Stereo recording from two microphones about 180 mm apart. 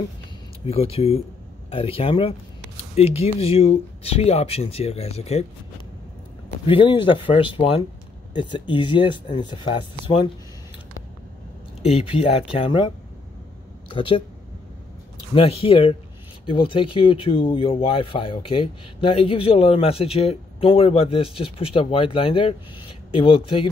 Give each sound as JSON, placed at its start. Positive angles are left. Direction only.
{"t": 0.7, "sound": "speech", "side_deg": 35}
{"t": 6.6, "sound": "speech", "side_deg": 30}
{"t": 11.9, "sound": "speech", "side_deg": 30}
{"t": 13.8, "sound": "speech", "side_deg": 30}
{"t": 15.3, "sound": "speech", "side_deg": 30}